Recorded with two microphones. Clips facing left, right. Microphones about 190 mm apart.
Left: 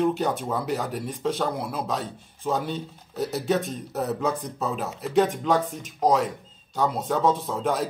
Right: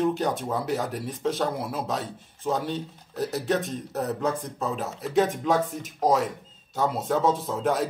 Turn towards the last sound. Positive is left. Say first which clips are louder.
# even
turn(degrees=0)  # may be behind; listen again after turning